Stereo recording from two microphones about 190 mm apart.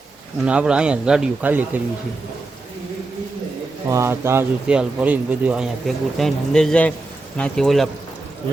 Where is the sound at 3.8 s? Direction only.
15° right (ahead or behind); by 7.8 s centre (ahead or behind).